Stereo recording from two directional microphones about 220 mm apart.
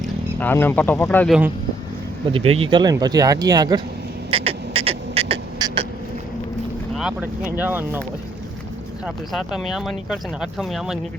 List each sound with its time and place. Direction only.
0.3 s speech: 10° left (ahead or behind)
2.3 s speech: 25° right (ahead or behind)
4.3 s a sound: 25° right (ahead or behind)
6.9 s speech: 5° right (ahead or behind)
9.0 s speech: centre (ahead or behind)